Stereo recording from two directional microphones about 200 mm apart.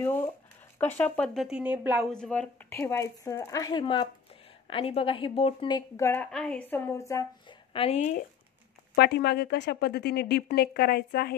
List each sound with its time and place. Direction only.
0.0 s a sound: 10° left (ahead or behind)
0.7 s speech: 10° left (ahead or behind)
6.3 s speech: 5° left (ahead or behind); by 8.2 s 35° left (ahead or behind)
8.9 s a woman's voice: 55° left (ahead or behind)